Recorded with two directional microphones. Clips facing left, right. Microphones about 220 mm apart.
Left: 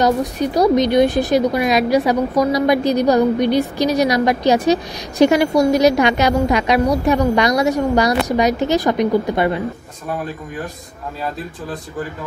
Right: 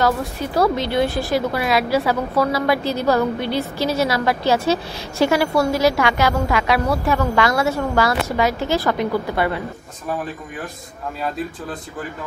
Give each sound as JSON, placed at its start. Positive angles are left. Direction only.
{"t": 0.0, "sound": "a woman's voice", "side_deg": 15}